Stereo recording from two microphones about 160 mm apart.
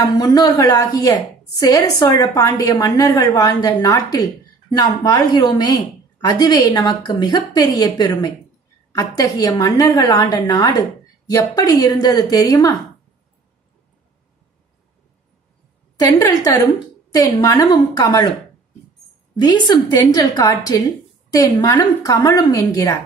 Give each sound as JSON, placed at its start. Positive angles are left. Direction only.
{"t": 0.0, "sound": "a woman's voice", "side_deg": 25}
{"t": 16.0, "sound": "a woman's voice", "side_deg": 20}
{"t": 19.3, "sound": "a woman's voice", "side_deg": 30}